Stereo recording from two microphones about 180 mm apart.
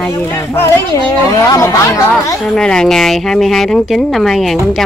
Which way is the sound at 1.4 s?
15° left (ahead or behind).